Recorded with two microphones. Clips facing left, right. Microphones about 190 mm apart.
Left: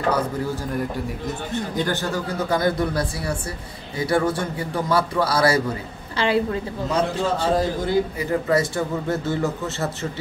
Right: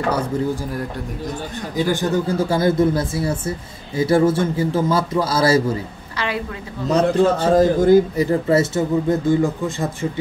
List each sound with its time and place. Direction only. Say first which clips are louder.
1.8 s speech: right 6 dB; 10° right (ahead or behind)
2.1 s a man's voice: right 4 dB; 25° right (ahead or behind)
6.1 s a woman's voice: left 5 dB; 30° left (ahead or behind)
7.2 s a man's voice: right 7 dB; 45° right (ahead or behind); by 9.8 s 15° right (ahead or behind)